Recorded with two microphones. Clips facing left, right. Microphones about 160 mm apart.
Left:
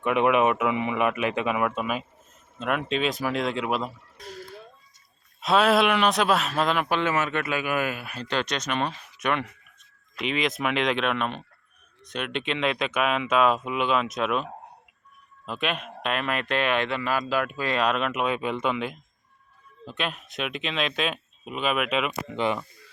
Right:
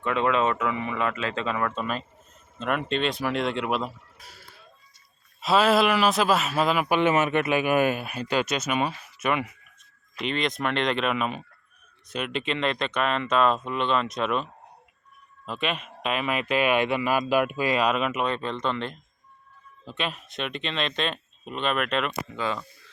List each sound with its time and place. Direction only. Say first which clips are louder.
0.0 s speech: left 3 dB; 15° left (ahead or behind); by 4.4 s 5° right (ahead or behind)
5.4 s speech: even; centre (ahead or behind)
7.0 s speech: right 4 dB; 20° right (ahead or behind)
8.2 s speech: right 1 dB; 10° right (ahead or behind)
15.4 s speech: even; centre (ahead or behind)
22.4 s speech: left 4 dB; 20° left (ahead or behind)